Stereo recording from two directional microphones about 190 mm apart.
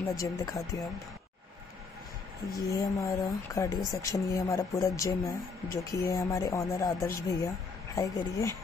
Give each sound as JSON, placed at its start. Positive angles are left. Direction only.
{"t": 0.1, "sound": "speech", "side_deg": 15}
{"t": 2.7, "sound": "speech", "side_deg": 15}